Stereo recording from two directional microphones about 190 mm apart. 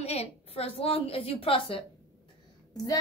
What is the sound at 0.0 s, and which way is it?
A woman's voice, 35° left (ahead or behind).